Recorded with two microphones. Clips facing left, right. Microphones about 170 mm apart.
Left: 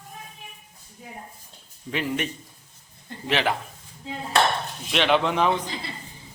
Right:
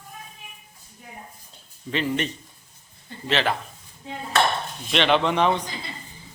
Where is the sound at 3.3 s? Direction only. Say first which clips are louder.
Even; 10° left (ahead or behind).